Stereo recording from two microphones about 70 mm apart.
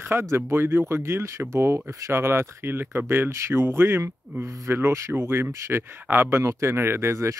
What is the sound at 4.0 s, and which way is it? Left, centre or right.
Speech, right.